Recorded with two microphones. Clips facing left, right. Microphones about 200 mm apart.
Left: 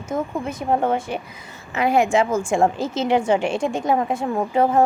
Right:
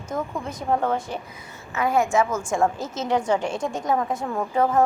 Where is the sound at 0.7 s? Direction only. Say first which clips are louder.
Left 3 dB; 25° left (ahead or behind).